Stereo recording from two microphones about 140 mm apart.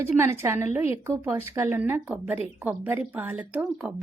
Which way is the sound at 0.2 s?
20° right (ahead or behind).